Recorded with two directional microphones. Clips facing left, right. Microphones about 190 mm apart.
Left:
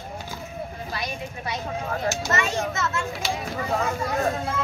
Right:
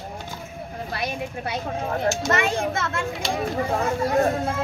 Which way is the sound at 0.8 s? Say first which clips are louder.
Right 3 dB; 60° right (ahead or behind).